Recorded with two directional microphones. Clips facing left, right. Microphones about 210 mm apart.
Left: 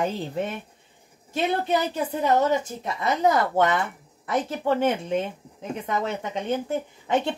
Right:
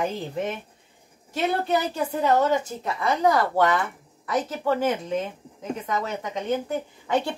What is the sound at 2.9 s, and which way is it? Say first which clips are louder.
Speech: even; 20° left (ahead or behind).